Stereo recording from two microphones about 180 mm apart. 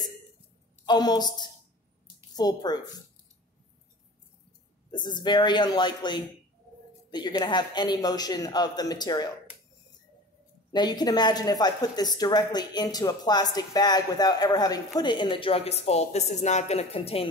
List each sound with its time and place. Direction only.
0.8 s a woman's voice: 25° left (ahead or behind)
4.9 s a woman's voice: 25° left (ahead or behind)
10.7 s a woman's voice: 25° left (ahead or behind)